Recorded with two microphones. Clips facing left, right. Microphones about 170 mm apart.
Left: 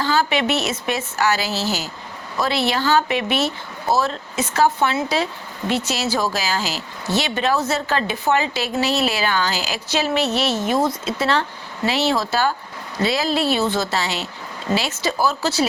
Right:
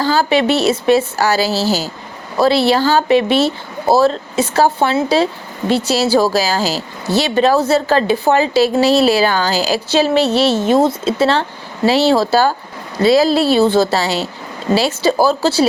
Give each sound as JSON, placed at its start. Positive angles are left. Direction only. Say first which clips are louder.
{"t": 0.0, "sound": "speech", "louder": "right 6 dB", "side_deg": -35}